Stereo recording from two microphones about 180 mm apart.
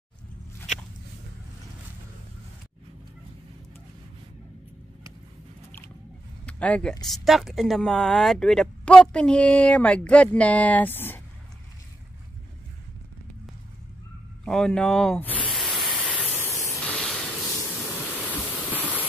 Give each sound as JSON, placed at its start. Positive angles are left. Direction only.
{"t": 6.4, "sound": "speech", "side_deg": 5}
{"t": 14.4, "sound": "speech", "side_deg": 5}
{"t": 15.5, "sound": "spray", "side_deg": 0}
{"t": 16.3, "sound": "spray", "side_deg": 15}
{"t": 16.8, "sound": "spray", "side_deg": 5}
{"t": 18.2, "sound": "a sound", "side_deg": 10}